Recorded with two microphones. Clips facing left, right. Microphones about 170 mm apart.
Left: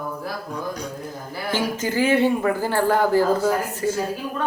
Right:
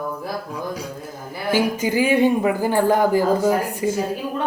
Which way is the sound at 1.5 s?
15° right (ahead or behind).